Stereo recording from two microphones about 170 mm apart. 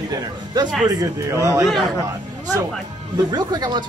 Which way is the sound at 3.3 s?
25° right (ahead or behind).